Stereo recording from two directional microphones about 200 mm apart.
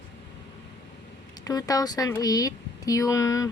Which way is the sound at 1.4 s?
20° left (ahead or behind).